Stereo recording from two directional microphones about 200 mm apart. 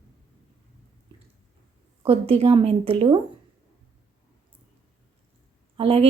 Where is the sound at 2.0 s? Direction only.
30° right (ahead or behind).